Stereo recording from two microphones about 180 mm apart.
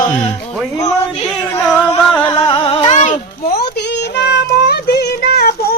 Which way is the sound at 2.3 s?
25° left (ahead or behind).